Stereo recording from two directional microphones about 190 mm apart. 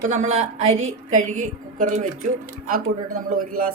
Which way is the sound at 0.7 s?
90° right.